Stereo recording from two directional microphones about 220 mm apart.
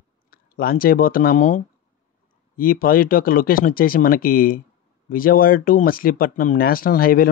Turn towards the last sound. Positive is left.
turn(degrees=40)  # may be behind; listen again after turning